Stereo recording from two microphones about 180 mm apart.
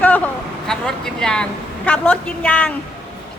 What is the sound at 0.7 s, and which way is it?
A woman's voice, 5° left (ahead or behind).